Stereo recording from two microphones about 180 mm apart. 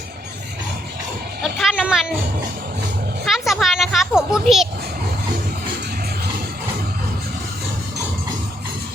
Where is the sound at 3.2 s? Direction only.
Centre (ahead or behind).